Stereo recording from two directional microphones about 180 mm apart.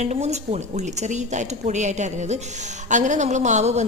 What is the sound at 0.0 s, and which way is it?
Speech, 40° right (ahead or behind).